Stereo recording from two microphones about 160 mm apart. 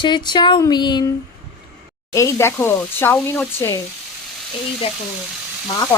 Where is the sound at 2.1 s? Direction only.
20° left (ahead or behind).